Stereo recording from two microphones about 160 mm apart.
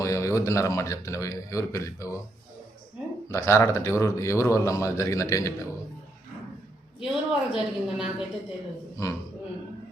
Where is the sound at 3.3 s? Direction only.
15° left (ahead or behind).